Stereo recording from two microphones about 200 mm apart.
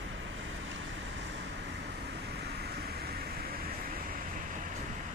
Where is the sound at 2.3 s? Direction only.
55° right (ahead or behind).